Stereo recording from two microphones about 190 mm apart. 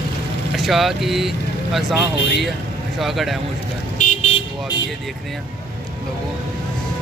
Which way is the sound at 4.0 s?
40° left (ahead or behind).